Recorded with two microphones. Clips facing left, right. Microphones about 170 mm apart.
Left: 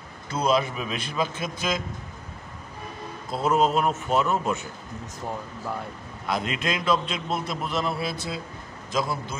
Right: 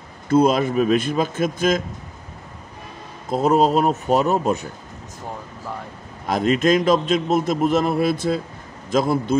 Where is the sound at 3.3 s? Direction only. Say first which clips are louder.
Right 6 dB; 40° right (ahead or behind).